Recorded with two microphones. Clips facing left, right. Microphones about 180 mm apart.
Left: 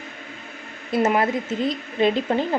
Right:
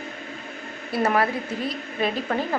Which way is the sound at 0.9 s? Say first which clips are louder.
Left 2 dB; 20° left (ahead or behind).